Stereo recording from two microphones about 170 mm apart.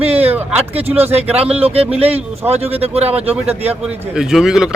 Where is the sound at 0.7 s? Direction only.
35° right (ahead or behind).